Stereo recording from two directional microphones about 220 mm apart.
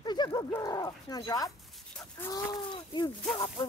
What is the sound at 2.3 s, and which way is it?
Speech, 20° left (ahead or behind).